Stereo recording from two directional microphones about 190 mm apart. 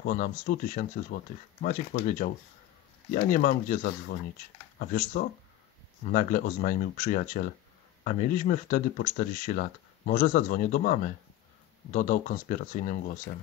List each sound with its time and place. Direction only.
0.0 s speech: 45° left (ahead or behind)